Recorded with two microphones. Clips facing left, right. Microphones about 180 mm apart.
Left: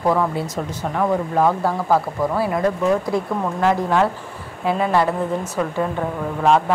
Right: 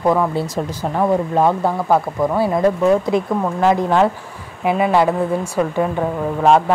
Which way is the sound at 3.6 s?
15° right (ahead or behind).